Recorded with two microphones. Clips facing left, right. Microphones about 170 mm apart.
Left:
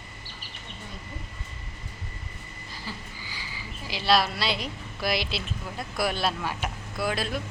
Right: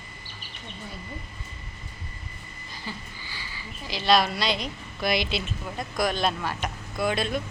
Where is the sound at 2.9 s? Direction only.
Centre (ahead or behind).